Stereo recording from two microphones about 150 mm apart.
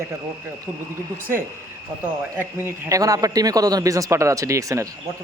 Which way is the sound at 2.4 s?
20° right (ahead or behind).